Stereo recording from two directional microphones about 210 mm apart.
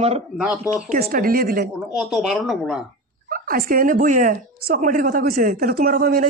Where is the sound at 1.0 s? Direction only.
45° right (ahead or behind).